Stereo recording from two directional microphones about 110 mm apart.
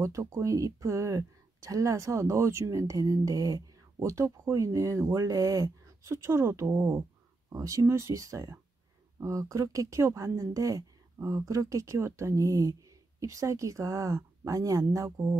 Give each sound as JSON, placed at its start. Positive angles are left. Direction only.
{"t": 0.0, "sound": "speech", "side_deg": -25}